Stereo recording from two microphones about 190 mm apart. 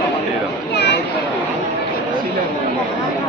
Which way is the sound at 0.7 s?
60° left (ahead or behind).